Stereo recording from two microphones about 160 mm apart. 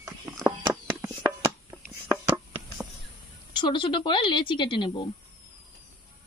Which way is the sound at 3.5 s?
30° left (ahead or behind).